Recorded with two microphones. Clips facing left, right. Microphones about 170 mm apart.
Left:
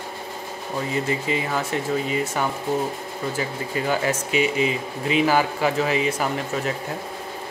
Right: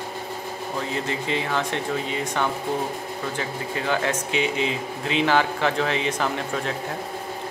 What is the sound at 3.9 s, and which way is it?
Speech, 5° left (ahead or behind).